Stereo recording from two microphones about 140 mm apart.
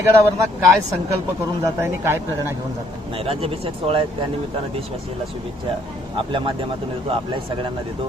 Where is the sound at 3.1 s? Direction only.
40° right (ahead or behind).